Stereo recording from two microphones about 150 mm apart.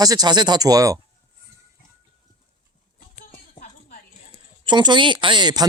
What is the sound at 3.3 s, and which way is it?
Music, 65° left (ahead or behind).